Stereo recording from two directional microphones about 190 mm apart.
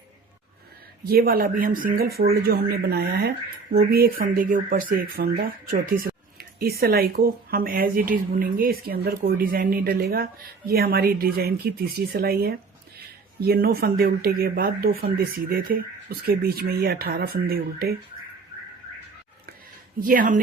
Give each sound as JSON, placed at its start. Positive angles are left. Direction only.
{"t": 1.0, "sound": "speech", "side_deg": -55}
{"t": 20.0, "sound": "speech", "side_deg": -45}